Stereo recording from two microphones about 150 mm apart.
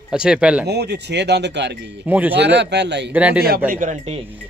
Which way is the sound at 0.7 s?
90° right.